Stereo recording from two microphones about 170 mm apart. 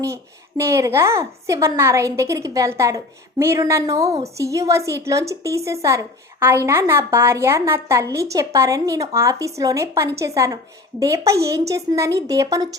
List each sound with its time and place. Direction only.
0.0 s a woman's voice: 15° right (ahead or behind)